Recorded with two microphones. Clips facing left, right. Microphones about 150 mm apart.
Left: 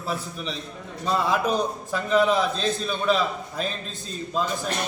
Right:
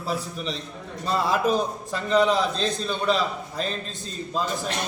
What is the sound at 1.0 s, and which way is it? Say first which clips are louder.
A man's voice: even; centre (ahead or behind).